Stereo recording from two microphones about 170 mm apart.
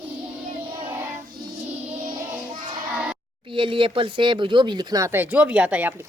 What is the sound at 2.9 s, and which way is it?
Music, 10° right (ahead or behind).